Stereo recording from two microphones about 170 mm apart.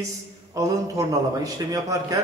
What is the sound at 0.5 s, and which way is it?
A man's voice, 20° right (ahead or behind).